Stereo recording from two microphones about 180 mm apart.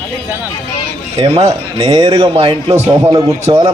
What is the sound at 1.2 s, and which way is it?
A man's voice, 35° right (ahead or behind).